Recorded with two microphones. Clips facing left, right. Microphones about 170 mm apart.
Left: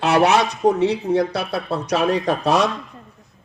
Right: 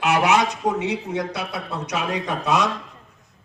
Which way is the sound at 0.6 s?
65° left (ahead or behind).